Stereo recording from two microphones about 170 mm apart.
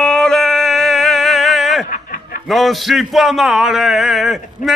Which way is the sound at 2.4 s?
Centre (ahead or behind).